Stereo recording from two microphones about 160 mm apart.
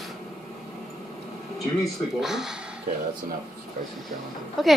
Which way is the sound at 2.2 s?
5° right (ahead or behind).